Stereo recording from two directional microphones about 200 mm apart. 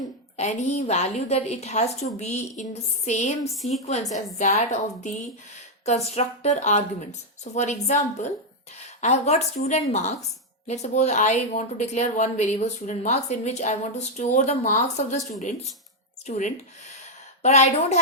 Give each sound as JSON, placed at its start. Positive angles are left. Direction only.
{"t": 0.3, "sound": "a woman's voice", "side_deg": 35}